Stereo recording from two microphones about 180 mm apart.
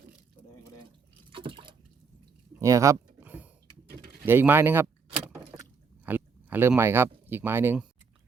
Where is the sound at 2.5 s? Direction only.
15° right (ahead or behind).